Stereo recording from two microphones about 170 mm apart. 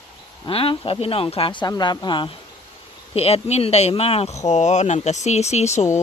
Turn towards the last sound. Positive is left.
turn(degrees=40)  # may be behind; listen again after turning